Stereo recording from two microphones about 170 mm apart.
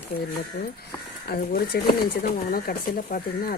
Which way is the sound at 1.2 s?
65° left (ahead or behind).